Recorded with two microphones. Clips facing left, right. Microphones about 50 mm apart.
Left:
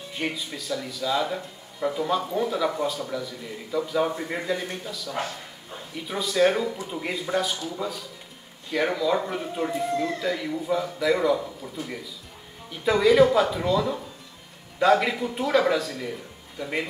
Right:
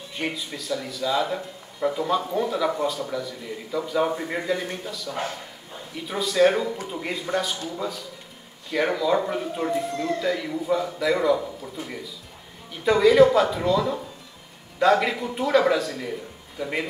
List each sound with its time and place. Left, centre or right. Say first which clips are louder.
0.1 s speech: right 1 dB; centre